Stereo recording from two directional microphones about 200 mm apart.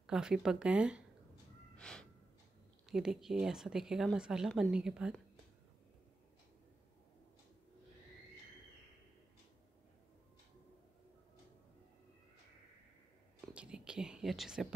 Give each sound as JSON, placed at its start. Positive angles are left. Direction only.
{"t": 0.0, "sound": "speech", "side_deg": -5}
{"t": 1.8, "sound": "snort", "side_deg": 5}
{"t": 2.9, "sound": "speech", "side_deg": 0}
{"t": 13.5, "sound": "whispering", "side_deg": -5}